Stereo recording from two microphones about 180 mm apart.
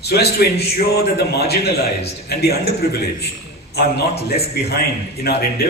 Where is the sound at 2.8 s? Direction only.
65° left (ahead or behind).